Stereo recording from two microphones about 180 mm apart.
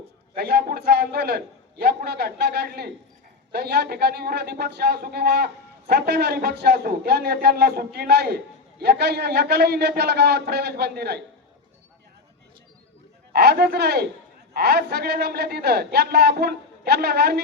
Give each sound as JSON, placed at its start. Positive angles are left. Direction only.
{"t": 0.3, "sound": "a man's voice", "side_deg": -60}
{"t": 13.3, "sound": "a man's voice", "side_deg": -65}